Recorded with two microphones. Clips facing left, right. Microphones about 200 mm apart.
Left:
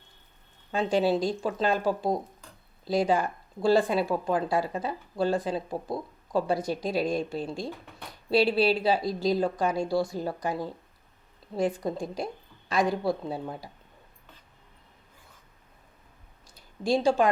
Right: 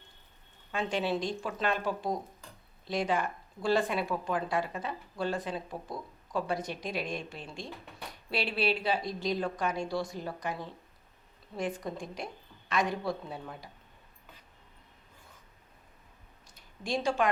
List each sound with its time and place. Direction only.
0.7 s speech: 35° left (ahead or behind)
16.6 s speech: 30° left (ahead or behind)